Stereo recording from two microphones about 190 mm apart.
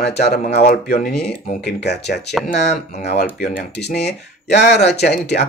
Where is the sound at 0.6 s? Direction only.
55° left (ahead or behind).